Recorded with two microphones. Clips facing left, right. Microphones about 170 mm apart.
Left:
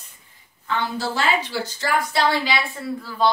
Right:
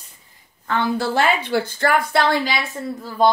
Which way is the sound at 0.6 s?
55° right (ahead or behind).